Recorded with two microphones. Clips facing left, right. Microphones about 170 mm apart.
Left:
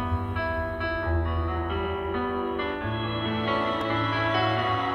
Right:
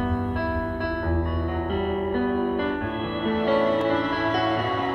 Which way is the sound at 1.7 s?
45° right (ahead or behind).